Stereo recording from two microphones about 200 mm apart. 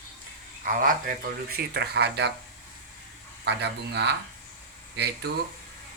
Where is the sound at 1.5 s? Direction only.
55° right (ahead or behind).